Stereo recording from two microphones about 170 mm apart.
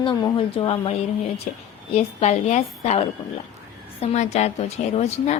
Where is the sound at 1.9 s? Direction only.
40° left (ahead or behind).